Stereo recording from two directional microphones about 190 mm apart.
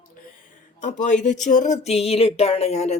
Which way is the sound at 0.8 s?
40° left (ahead or behind).